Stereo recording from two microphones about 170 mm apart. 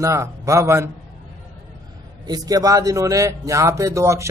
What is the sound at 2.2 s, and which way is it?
A man's voice, 20° right (ahead or behind).